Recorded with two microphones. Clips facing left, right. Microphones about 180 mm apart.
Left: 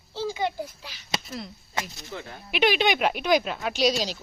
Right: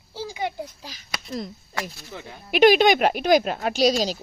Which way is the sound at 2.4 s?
45° right (ahead or behind).